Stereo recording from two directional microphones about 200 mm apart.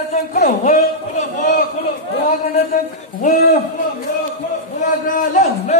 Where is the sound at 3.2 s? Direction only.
40° left (ahead or behind).